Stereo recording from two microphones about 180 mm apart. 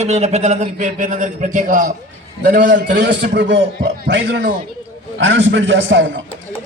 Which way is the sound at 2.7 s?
70° right (ahead or behind).